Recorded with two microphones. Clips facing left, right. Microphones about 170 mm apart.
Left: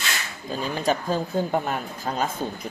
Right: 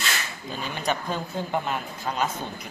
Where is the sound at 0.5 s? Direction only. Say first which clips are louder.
Left 4 dB; 35° left (ahead or behind).